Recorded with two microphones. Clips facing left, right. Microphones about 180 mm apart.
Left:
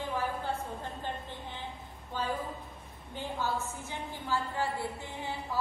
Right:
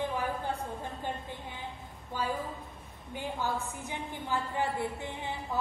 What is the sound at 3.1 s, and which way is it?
A woman's voice, 15° right (ahead or behind).